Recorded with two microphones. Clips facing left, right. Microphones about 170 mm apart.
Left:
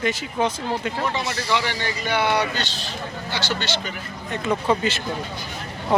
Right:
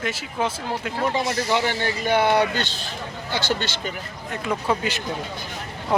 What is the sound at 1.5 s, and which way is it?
Speech, 45° right (ahead or behind).